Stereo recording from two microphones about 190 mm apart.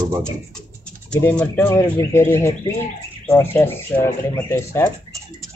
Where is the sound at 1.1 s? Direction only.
10° left (ahead or behind).